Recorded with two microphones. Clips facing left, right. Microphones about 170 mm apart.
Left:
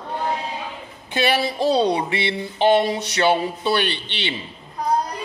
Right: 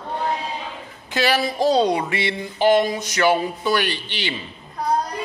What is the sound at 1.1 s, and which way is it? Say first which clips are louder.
Speech: even; 25° left (ahead or behind).